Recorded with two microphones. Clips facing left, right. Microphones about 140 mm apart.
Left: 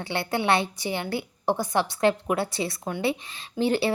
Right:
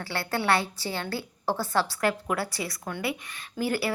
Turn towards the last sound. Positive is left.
turn(degrees=25)  # may be behind; listen again after turning